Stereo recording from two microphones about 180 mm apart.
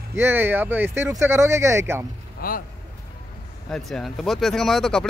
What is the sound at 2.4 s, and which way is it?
Speech, 55° left (ahead or behind).